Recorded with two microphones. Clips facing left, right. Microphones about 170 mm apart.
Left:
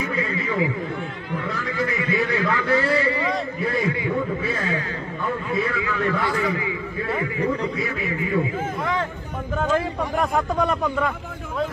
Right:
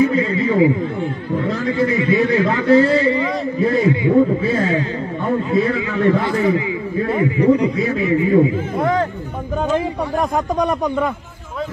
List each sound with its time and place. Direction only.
0.0 s a sound: 30° right (ahead or behind)
5.5 s a man's voice: 30° right (ahead or behind)
8.7 s speech: 45° right (ahead or behind)
9.7 s a man's voice: 20° right (ahead or behind)